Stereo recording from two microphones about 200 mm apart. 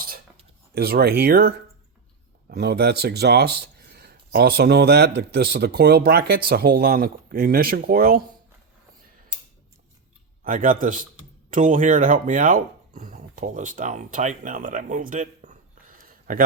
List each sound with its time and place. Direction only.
0.7 s speech: 50° right (ahead or behind)
10.4 s speech: 45° right (ahead or behind)